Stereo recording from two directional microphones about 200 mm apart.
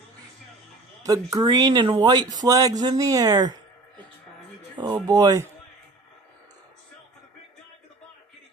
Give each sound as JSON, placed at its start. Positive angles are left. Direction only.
{"t": 1.0, "sound": "speech", "side_deg": -20}
{"t": 4.9, "sound": "speech", "side_deg": -20}